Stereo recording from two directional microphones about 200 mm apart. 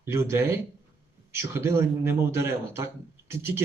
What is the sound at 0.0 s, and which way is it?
A man's voice, 10° right (ahead or behind).